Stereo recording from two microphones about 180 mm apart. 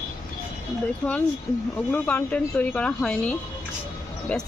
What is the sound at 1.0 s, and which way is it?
A woman's voice, 5° left (ahead or behind).